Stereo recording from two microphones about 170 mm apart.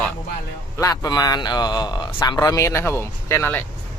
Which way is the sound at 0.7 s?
20° left (ahead or behind).